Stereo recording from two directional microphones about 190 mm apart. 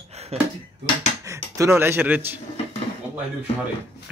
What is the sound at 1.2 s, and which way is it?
Speech, 15° right (ahead or behind).